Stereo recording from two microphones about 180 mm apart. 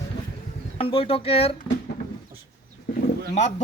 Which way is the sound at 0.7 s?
30° left (ahead or behind).